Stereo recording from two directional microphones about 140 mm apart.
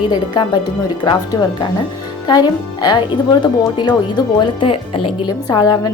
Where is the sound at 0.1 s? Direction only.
35° left (ahead or behind).